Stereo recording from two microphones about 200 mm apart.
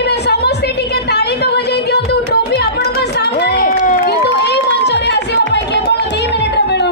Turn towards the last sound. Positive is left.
turn(degrees=55)  # may be behind; listen again after turning